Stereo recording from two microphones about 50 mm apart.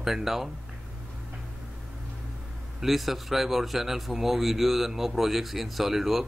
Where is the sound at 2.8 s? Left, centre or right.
Centre.